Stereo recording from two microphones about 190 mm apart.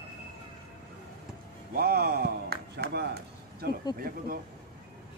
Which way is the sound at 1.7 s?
55° right (ahead or behind).